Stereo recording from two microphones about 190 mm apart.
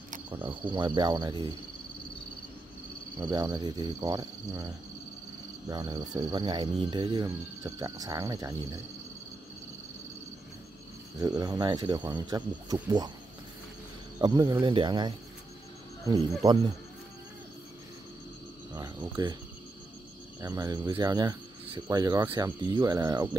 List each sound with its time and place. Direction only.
0.3 s speech: 25° right (ahead or behind)
3.2 s speech: 20° right (ahead or behind)
5.7 s speech: 20° right (ahead or behind)
11.1 s speech: 20° right (ahead or behind)
14.2 s speech: 20° right (ahead or behind)
18.7 s speech: 20° right (ahead or behind)
20.3 s speech: 20° right (ahead or behind)